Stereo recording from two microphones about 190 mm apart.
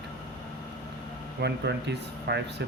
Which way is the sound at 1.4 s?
65° right (ahead or behind).